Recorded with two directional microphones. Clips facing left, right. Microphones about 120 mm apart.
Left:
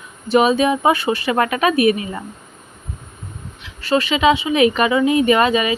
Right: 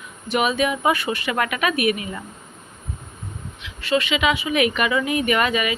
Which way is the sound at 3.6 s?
35° left (ahead or behind).